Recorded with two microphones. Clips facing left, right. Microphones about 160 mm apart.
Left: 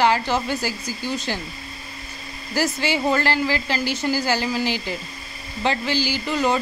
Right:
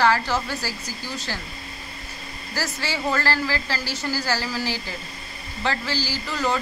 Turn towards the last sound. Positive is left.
turn(degrees=20)  # may be behind; listen again after turning